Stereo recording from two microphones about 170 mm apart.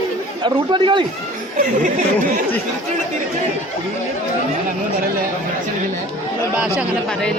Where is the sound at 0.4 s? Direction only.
25° right (ahead or behind).